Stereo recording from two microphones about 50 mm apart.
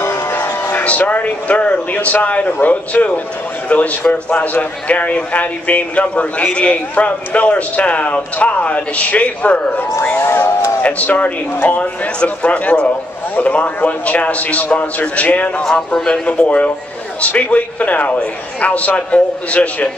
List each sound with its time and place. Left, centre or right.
0.0 s a sound: left
0.7 s a man's voice: left
10.8 s a man's voice: left
15.6 s speech: centre
16.3 s a man's voice: left